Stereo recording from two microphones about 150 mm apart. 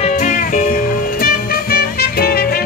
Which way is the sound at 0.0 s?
50° left (ahead or behind).